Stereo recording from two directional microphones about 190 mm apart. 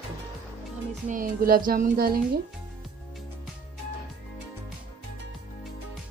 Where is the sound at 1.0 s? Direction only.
45° right (ahead or behind).